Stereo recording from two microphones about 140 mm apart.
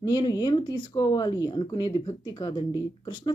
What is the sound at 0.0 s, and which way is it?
Speech, 30° left (ahead or behind).